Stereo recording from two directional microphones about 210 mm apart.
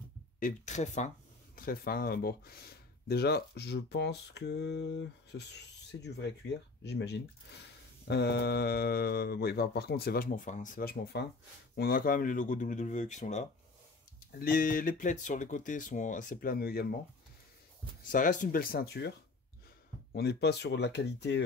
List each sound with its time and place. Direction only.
0.4 s speech: 35° left (ahead or behind)
14.4 s speech: 45° left (ahead or behind)
18.1 s speech: 40° left (ahead or behind); by 21.4 s 55° left (ahead or behind)